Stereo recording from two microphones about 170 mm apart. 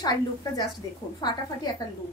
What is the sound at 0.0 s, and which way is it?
Speech, 25° left (ahead or behind).